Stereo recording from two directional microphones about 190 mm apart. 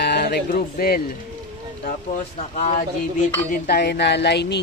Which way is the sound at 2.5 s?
35° left (ahead or behind).